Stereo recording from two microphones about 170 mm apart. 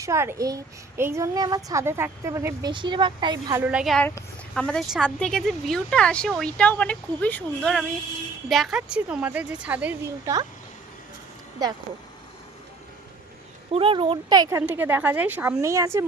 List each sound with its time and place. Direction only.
0.0 s a child's voice: 15° right (ahead or behind)
3.5 s a woman's voice: 10° right (ahead or behind)
4.0 s a woman's voice: 10° left (ahead or behind); by 10.4 s 15° right (ahead or behind)
11.6 s a child's voice: 25° right (ahead or behind)
13.7 s a child's voice: 35° right (ahead or behind)
14.7 s a woman's voice: 10° right (ahead or behind)